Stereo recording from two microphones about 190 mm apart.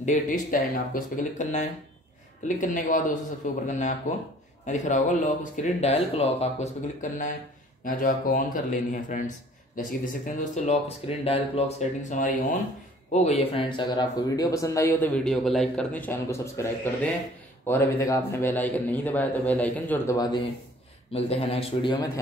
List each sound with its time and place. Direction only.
0.0 s speech: 45° left (ahead or behind); by 20.2 s 10° left (ahead or behind)
21.1 s a man's voice: 30° left (ahead or behind)